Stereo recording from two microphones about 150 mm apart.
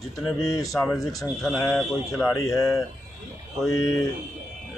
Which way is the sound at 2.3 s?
20° left (ahead or behind).